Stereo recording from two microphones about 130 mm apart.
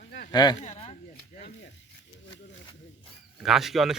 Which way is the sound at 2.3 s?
40° left (ahead or behind).